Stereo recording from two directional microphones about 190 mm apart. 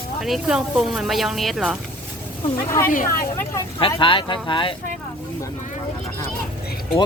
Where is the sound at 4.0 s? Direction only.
25° left (ahead or behind).